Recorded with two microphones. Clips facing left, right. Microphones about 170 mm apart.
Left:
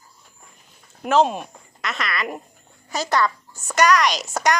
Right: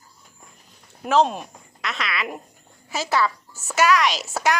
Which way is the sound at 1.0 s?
Centre (ahead or behind).